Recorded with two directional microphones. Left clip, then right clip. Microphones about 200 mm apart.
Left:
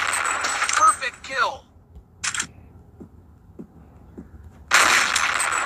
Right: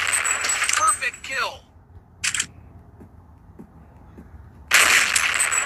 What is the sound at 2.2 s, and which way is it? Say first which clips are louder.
Single-lens reflex camera: right 2 dB; centre (ahead or behind).